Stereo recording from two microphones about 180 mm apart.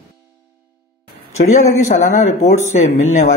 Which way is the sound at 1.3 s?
40° left (ahead or behind).